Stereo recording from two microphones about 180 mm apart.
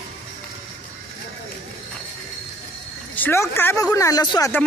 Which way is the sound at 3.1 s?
15° left (ahead or behind).